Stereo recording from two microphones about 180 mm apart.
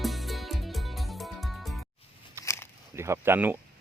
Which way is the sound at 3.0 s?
15° right (ahead or behind).